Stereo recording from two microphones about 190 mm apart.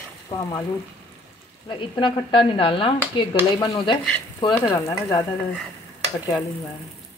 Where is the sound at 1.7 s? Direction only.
25° left (ahead or behind).